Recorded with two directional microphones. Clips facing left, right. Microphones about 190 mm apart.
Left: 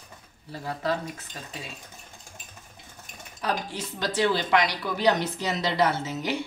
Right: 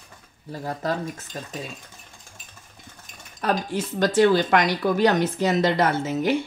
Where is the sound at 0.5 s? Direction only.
45° right (ahead or behind).